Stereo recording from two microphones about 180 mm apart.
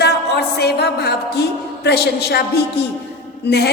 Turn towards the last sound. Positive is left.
turn(degrees=70)  # may be behind; listen again after turning